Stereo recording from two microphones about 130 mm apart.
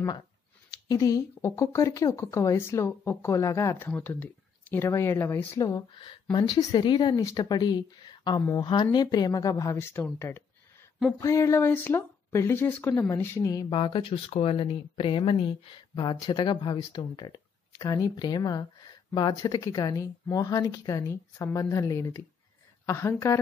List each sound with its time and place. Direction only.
0.8 s speech: 25° left (ahead or behind)
13.7 s speech: 40° left (ahead or behind); by 23.4 s 20° left (ahead or behind)